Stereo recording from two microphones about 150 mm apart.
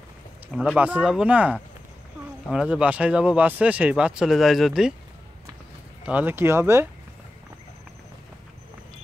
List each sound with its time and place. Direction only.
0.5 s speech: 5° right (ahead or behind)
6.0 s speech: 10° right (ahead or behind)